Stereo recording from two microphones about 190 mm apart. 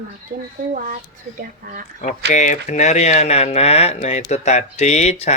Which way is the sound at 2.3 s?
40° left (ahead or behind).